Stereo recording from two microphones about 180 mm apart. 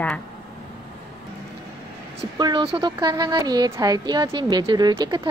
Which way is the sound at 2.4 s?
25° right (ahead or behind).